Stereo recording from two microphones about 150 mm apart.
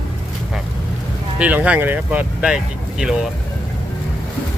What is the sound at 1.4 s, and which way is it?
Speech, 10° right (ahead or behind).